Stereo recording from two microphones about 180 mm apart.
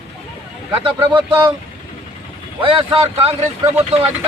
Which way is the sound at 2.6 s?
30° right (ahead or behind).